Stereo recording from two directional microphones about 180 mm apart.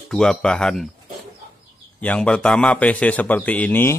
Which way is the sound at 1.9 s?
5° left (ahead or behind).